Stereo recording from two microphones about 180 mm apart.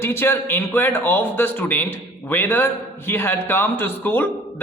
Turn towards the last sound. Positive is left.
turn(degrees=10)  # may be behind; listen again after turning